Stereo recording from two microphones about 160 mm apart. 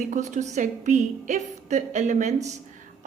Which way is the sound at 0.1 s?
50° right (ahead or behind).